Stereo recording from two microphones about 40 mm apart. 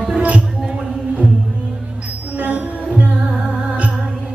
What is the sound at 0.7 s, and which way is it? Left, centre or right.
Music, right.